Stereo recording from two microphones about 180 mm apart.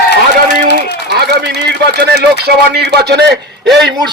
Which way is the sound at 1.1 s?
65° right (ahead or behind).